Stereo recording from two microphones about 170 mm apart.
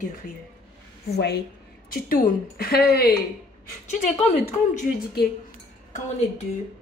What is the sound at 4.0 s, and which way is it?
Speech, 45° left (ahead or behind).